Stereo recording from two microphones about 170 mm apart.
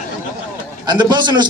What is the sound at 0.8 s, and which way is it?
Speech, 25° right (ahead or behind).